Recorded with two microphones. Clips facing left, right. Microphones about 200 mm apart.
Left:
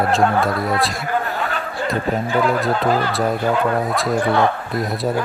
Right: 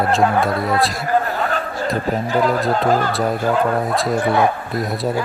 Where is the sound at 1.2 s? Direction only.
40° right (ahead or behind).